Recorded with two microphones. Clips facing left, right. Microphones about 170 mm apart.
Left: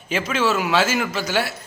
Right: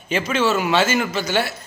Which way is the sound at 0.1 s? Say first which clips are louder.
Right 2 dB; 5° left (ahead or behind).